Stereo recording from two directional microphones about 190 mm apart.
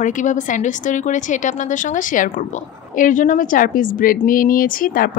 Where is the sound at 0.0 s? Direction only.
40° left (ahead or behind).